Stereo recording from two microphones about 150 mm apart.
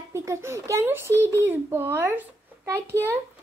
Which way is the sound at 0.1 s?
20° right (ahead or behind).